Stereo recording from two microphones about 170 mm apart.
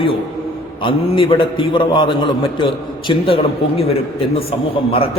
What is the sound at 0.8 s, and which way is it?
A man's voice, 30° left (ahead or behind).